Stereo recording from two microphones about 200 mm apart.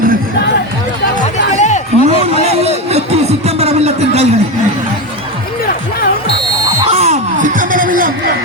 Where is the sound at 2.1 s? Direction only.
30° right (ahead or behind).